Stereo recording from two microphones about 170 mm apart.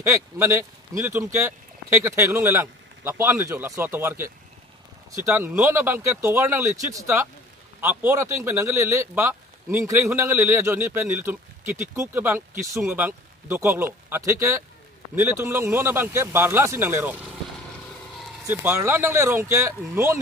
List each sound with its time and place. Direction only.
0.0 s speech: 15° right (ahead or behind)
18.5 s speech: 10° right (ahead or behind)